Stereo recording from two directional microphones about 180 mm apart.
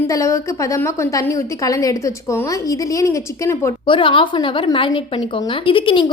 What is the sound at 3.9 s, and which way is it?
A woman's voice, 30° left (ahead or behind).